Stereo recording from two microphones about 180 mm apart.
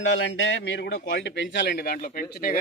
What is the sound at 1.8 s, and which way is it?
Speech, 50° left (ahead or behind).